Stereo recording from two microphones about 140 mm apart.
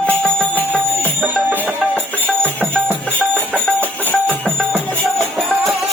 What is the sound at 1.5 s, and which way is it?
Music, 15° right (ahead or behind).